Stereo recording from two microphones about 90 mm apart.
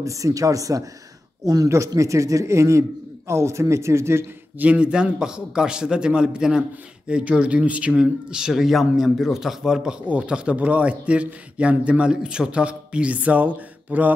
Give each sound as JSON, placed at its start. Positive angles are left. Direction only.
{"t": 0.0, "sound": "speech", "side_deg": -35}
{"t": 4.6, "sound": "speech", "side_deg": -15}